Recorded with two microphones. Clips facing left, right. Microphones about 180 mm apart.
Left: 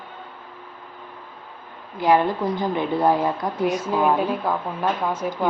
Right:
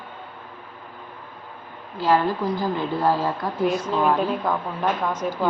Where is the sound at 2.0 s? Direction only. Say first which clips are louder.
Left 2 dB; 15° left (ahead or behind).